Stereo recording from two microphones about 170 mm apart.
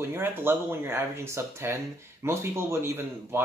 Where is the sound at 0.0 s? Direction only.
15° right (ahead or behind).